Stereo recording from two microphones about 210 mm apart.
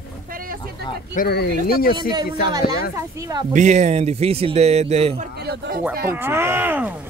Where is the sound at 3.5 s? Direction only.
35° right (ahead or behind).